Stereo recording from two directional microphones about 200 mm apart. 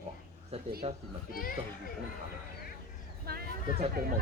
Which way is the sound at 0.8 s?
30° right (ahead or behind).